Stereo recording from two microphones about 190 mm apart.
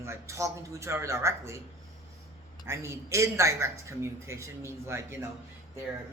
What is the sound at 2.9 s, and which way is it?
A man's voice, 15° right (ahead or behind).